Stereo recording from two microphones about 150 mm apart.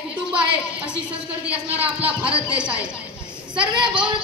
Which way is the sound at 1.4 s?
10° right (ahead or behind).